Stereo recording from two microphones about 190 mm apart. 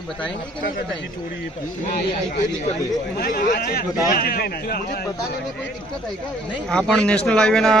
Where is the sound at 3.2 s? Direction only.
50° left (ahead or behind).